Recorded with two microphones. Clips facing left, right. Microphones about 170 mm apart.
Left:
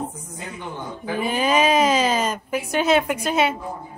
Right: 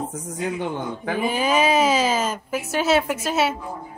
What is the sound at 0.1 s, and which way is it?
A man's voice, 85° right.